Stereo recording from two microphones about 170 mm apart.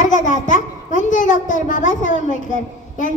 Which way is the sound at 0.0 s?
50° left (ahead or behind).